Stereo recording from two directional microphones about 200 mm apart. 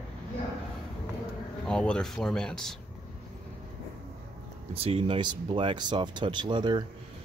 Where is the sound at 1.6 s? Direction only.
5° left (ahead or behind).